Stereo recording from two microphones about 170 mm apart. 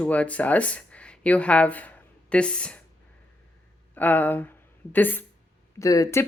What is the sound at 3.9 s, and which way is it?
Speech, 10° left (ahead or behind).